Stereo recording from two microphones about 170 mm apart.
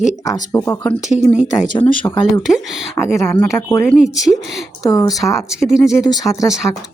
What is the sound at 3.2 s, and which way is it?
Speech, 10° left (ahead or behind).